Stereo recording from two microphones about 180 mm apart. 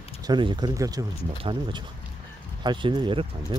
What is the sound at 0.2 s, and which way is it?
Speech, 25° right (ahead or behind).